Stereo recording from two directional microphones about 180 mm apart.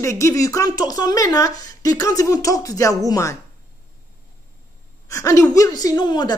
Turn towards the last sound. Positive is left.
turn(degrees=25)  # may be behind; listen again after turning